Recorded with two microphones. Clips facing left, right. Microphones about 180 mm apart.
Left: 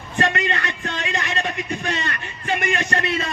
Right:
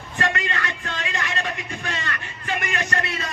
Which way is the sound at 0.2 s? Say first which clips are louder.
Left 4 dB; 20° left (ahead or behind).